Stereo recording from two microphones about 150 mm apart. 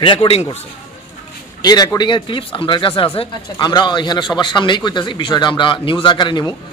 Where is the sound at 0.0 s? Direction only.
35° left (ahead or behind).